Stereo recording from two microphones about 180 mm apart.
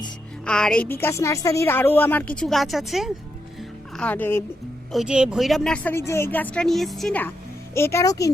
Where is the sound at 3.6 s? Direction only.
5° left (ahead or behind).